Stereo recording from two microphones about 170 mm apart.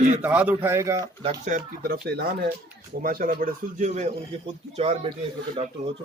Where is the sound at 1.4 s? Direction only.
55° right (ahead or behind); by 2.5 s 70° right (ahead or behind).